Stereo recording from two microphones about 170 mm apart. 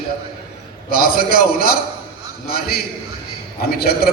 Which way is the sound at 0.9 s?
60° left (ahead or behind).